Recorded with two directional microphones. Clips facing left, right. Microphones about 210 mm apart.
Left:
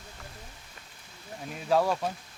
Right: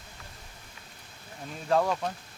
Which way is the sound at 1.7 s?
5° left (ahead or behind).